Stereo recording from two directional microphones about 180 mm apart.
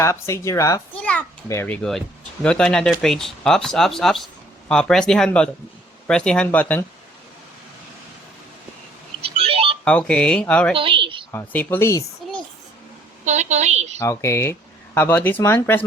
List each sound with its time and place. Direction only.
0.0 s speech: 15° left (ahead or behind)
0.9 s a child's voice: 5° left (ahead or behind)
9.2 s a sound: 30° right (ahead or behind)
9.8 s a child's voice: 5° left (ahead or behind)
10.8 s a woman's voice: 30° right (ahead or behind)
11.3 s speech: 10° left (ahead or behind)
13.2 s a woman's voice: 40° right (ahead or behind)
14.0 s speech: 15° left (ahead or behind)